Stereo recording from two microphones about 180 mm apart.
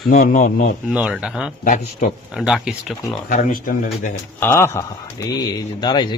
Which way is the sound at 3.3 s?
50° left (ahead or behind).